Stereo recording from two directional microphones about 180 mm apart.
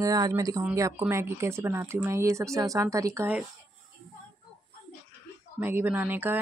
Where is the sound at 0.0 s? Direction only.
20° right (ahead or behind).